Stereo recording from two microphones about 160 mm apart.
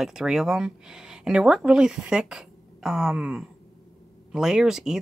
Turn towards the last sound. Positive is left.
turn(degrees=-5)  # may be behind; listen again after turning